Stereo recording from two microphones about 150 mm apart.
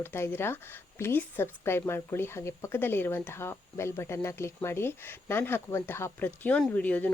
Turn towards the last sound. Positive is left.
turn(degrees=10)  # may be behind; listen again after turning